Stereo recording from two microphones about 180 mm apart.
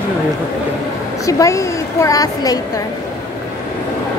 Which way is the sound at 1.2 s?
15° left (ahead or behind).